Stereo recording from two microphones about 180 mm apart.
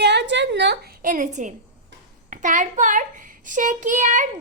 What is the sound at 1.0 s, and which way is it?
A woman's voice, 45° right (ahead or behind).